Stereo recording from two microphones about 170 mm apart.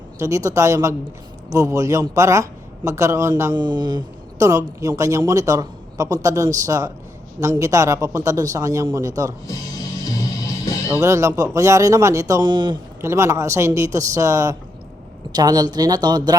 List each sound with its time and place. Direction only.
0.2 s a man's voice: 20° right (ahead or behind)
10.8 s speech: 15° right (ahead or behind)
13.0 s a man's voice: 15° right (ahead or behind)